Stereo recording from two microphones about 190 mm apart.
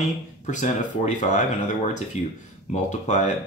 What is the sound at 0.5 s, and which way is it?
Speech, 40° left (ahead or behind).